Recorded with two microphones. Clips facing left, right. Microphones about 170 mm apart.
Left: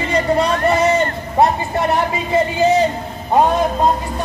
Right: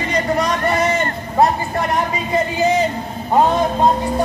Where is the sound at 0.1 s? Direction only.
30° left (ahead or behind).